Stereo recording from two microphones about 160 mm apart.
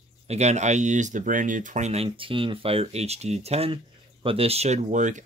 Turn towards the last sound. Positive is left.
turn(degrees=-50)  # may be behind; listen again after turning